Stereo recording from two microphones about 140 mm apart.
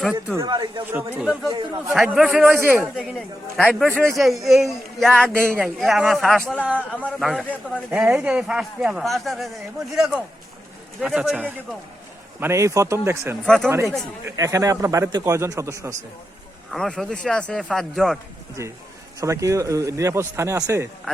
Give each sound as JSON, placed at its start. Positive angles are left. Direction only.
{"t": 0.3, "sound": "a man's voice", "side_deg": -30}
{"t": 0.9, "sound": "speech", "side_deg": -15}
{"t": 1.5, "sound": "a man's voice", "side_deg": -25}
{"t": 2.0, "sound": "speech", "side_deg": -5}
{"t": 3.6, "sound": "speech", "side_deg": 10}
{"t": 7.9, "sound": "speech", "side_deg": -10}
{"t": 12.4, "sound": "a man's voice", "side_deg": -20}
{"t": 13.4, "sound": "speech", "side_deg": 5}
{"t": 14.3, "sound": "a man's voice", "side_deg": -20}
{"t": 16.7, "sound": "speech", "side_deg": 5}
{"t": 19.2, "sound": "a man's voice", "side_deg": -20}